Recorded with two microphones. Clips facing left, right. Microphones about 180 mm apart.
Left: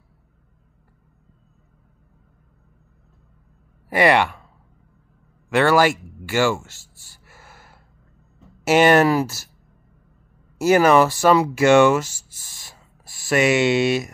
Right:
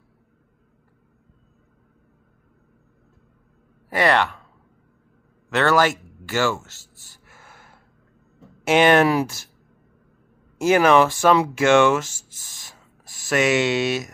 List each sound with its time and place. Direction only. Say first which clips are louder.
3.9 s speech: left 3 dB; 10° left (ahead or behind)
5.5 s speech: left 2 dB; 10° left (ahead or behind)
7.2 s gasp: left 1 dB; 5° left (ahead or behind)
8.6 s speech: left 1 dB; 5° left (ahead or behind)
10.6 s speech: left 1 dB; 5° left (ahead or behind)
12.1 s a sound: even; 45° right (ahead or behind)
13.3 s speech: left 2 dB; 10° left (ahead or behind)